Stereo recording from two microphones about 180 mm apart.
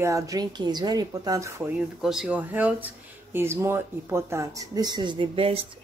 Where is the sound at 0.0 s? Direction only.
20° right (ahead or behind).